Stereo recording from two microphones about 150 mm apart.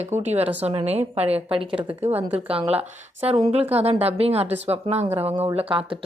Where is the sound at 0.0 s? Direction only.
45° right (ahead or behind).